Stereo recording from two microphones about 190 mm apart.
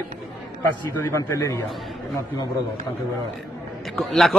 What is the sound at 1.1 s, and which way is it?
Speech, 15° left (ahead or behind).